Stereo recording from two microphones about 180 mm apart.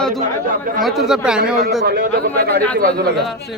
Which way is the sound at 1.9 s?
60° right (ahead or behind).